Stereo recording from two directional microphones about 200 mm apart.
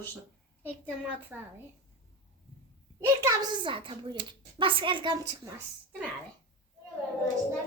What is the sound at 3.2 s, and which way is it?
A woman's voice, 20° right (ahead or behind).